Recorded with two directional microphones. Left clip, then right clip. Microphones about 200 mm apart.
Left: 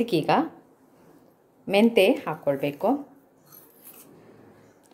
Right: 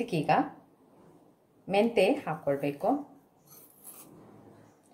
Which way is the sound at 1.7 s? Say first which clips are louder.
Left 5 dB; 35° left (ahead or behind).